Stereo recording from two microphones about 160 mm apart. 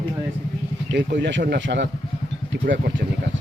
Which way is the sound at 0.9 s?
90° right.